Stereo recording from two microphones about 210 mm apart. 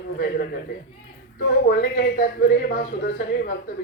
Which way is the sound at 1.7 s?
50° left (ahead or behind).